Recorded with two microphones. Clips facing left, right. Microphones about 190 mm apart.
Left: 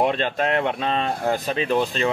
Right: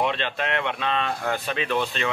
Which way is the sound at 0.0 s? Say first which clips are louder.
Left 5 dB; 40° left (ahead or behind).